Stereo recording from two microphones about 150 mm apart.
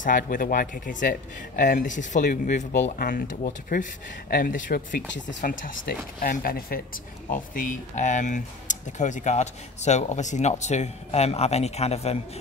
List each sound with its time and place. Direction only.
0.0 s speech: 65° left (ahead or behind)
3.0 s speech: 70° left (ahead or behind); by 12.2 s 45° left (ahead or behind)